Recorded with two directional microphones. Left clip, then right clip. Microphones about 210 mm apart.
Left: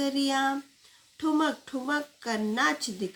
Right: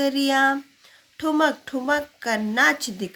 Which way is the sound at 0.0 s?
50° right (ahead or behind).